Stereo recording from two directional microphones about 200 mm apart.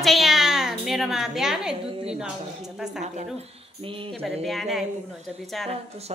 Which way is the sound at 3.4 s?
25° right (ahead or behind).